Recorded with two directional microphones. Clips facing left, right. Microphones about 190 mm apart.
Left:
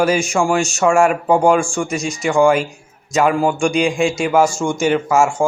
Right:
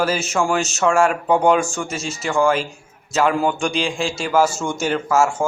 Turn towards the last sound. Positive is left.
turn(degrees=15)  # may be behind; listen again after turning